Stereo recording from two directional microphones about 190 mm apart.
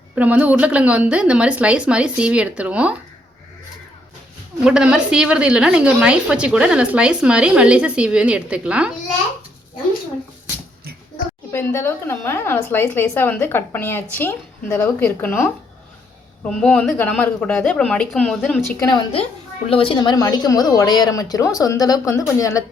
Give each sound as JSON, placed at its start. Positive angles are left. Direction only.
{"t": 0.2, "sound": "a woman's voice", "side_deg": -10}
{"t": 4.6, "sound": "a woman's voice", "side_deg": -5}
{"t": 11.5, "sound": "a woman's voice", "side_deg": 15}
{"t": 18.8, "sound": "a woman's voice", "side_deg": 20}